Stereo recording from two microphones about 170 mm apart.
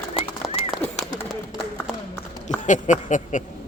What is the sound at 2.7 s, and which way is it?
Speech, 45° left (ahead or behind).